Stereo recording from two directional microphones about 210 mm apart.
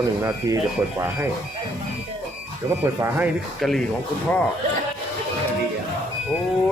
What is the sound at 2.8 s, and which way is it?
Speech, 10° right (ahead or behind).